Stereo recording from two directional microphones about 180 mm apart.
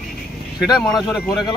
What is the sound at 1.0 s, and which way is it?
Speech, centre (ahead or behind).